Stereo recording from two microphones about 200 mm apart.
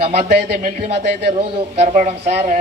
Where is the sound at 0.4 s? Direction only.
50° right (ahead or behind).